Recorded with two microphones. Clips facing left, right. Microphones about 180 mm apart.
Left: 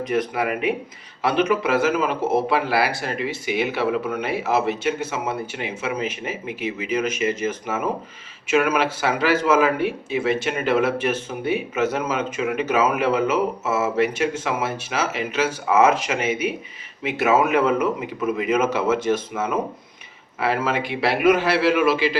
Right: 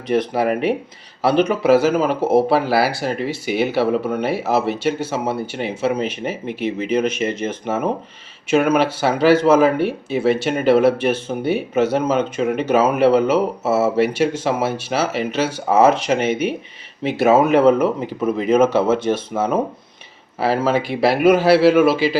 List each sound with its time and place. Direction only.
0.1 s speech: 35° right (ahead or behind)
6.4 s speech: 5° left (ahead or behind)
7.4 s speech: 30° right (ahead or behind)
16.3 s speech: 5° left (ahead or behind)
17.0 s speech: 35° right (ahead or behind)